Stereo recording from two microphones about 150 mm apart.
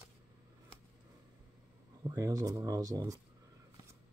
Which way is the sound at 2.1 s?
20° right (ahead or behind).